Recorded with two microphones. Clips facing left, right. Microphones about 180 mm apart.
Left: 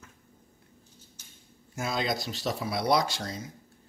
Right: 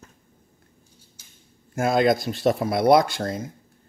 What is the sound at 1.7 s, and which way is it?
A man's voice, 55° right (ahead or behind).